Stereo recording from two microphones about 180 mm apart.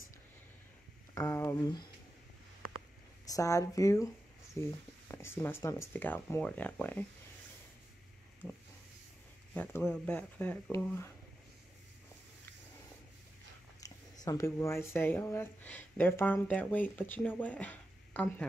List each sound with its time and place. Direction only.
1.1 s speech: 15° left (ahead or behind)
3.3 s speech: 20° left (ahead or behind)
9.5 s speech: 10° left (ahead or behind)
14.2 s speech: 20° left (ahead or behind)